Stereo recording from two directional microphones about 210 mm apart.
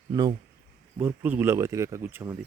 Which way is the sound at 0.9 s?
10° right (ahead or behind).